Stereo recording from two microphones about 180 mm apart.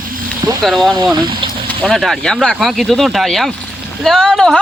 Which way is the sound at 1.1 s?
25° right (ahead or behind).